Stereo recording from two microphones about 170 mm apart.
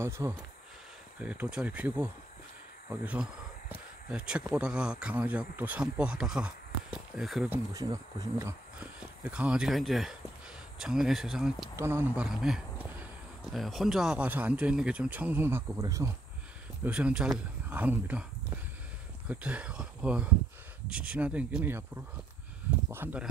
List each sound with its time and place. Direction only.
0.2 s speech: 15° right (ahead or behind)
7.5 s speech: 20° right (ahead or behind)
8.7 s speech: 5° right (ahead or behind)
11.7 s speech: 15° right (ahead or behind)
12.3 s speech: 5° right (ahead or behind); by 16.1 s 20° right (ahead or behind)
16.8 s speech: 5° right (ahead or behind)
19.2 s speech: 10° right (ahead or behind)
22.8 s speech: 15° right (ahead or behind)